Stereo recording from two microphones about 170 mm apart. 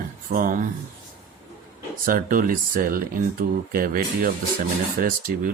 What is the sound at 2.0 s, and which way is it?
Speech, 55° right (ahead or behind).